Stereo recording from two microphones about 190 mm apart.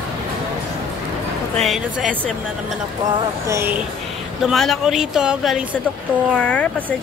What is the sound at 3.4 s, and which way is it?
Speech, 10° right (ahead or behind).